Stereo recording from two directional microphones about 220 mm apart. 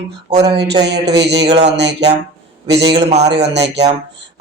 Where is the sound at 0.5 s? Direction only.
50° right (ahead or behind).